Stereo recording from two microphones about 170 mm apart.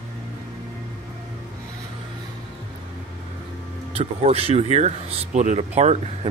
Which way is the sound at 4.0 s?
35° right (ahead or behind).